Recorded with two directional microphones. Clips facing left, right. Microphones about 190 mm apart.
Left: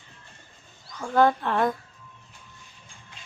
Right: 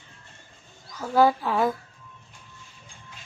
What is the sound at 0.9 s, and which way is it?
Speech, 5° right (ahead or behind).